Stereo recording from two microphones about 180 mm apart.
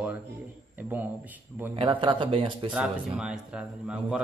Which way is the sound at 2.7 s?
5° right (ahead or behind).